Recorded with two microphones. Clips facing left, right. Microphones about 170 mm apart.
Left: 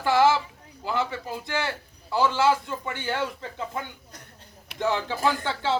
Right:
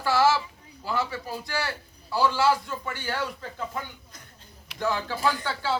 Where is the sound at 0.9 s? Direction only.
20° left (ahead or behind).